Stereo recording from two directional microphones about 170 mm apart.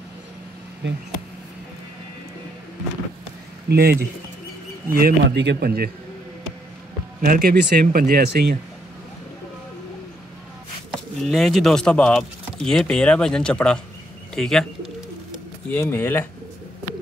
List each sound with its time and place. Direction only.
3.6 s a man's voice: 70° right (ahead or behind)
7.2 s speech: 55° right (ahead or behind)
11.2 s speech: centre (ahead or behind)
14.3 s pigeon: 5° left (ahead or behind)
15.7 s speech: 15° left (ahead or behind)